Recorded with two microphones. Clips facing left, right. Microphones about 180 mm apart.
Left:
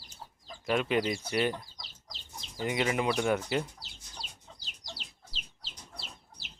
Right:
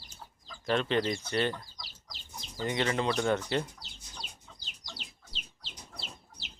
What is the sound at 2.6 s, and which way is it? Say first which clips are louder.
Speech: left 1 dB; 10° left (ahead or behind).